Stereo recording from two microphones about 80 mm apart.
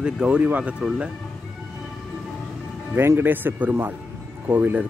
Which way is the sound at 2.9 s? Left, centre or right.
Right.